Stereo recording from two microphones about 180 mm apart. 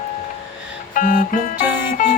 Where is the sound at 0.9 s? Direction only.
45° left (ahead or behind).